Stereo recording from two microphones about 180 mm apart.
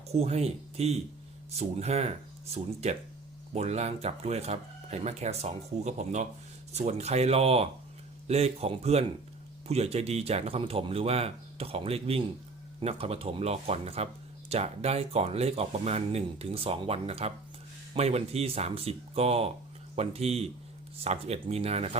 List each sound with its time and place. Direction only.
0.1 s speech: 35° right (ahead or behind)